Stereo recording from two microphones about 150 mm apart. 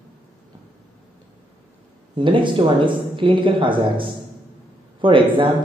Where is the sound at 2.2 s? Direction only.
35° right (ahead or behind).